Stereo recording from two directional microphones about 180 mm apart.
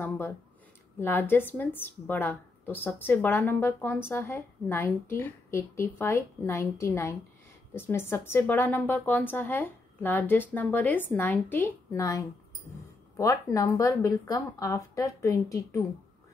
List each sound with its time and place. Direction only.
0.9 s speech: 10° left (ahead or behind)